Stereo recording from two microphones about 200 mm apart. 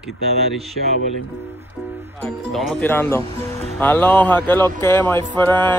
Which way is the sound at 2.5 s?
5° left (ahead or behind).